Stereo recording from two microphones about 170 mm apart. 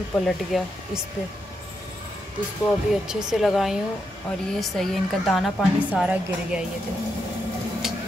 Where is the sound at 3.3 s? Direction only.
Centre (ahead or behind).